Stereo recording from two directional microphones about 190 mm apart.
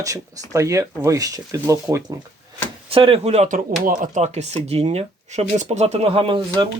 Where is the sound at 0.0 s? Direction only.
15° right (ahead or behind).